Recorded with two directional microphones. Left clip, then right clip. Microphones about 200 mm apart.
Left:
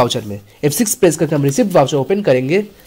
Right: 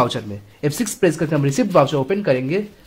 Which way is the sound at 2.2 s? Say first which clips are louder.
Left 5 dB; 30° left (ahead or behind).